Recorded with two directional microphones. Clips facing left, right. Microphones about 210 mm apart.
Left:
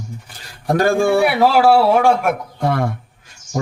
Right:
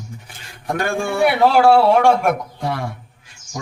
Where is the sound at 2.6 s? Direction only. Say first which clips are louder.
Left 6 dB; 50° left (ahead or behind).